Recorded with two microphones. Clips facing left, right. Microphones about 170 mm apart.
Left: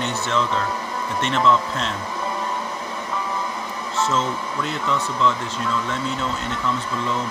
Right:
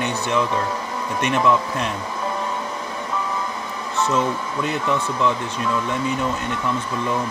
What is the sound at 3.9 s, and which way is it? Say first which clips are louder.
Speech: right 2 dB; 15° right (ahead or behind).